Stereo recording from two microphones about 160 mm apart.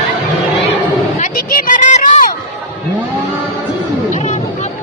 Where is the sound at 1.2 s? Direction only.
50° left (ahead or behind).